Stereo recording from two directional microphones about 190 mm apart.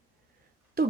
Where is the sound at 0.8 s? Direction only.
50° right (ahead or behind).